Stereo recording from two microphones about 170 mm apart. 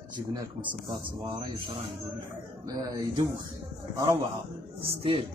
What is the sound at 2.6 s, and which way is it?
Speech, 20° right (ahead or behind).